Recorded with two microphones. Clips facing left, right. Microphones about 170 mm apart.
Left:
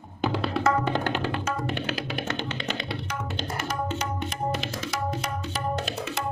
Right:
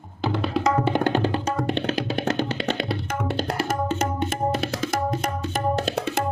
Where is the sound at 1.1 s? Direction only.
35° right (ahead or behind).